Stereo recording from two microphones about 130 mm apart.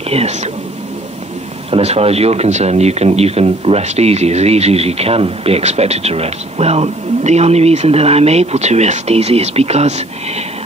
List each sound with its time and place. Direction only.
0.1 s speech: 55° right (ahead or behind)
1.7 s speech: 55° right (ahead or behind)